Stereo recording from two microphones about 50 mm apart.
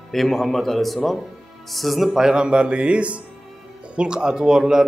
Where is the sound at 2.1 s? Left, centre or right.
Centre.